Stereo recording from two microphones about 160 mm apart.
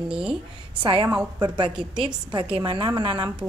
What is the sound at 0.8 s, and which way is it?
A woman's voice, 30° right (ahead or behind).